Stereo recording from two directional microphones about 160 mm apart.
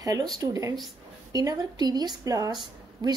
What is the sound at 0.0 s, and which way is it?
A woman's voice, 25° right (ahead or behind).